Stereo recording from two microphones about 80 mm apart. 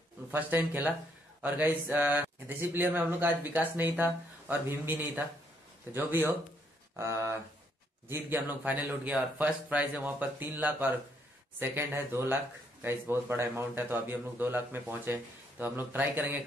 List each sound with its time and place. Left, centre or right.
0.3 s speech: right
8.1 s speech: right